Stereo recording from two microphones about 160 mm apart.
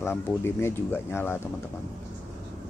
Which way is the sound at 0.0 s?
15° left (ahead or behind).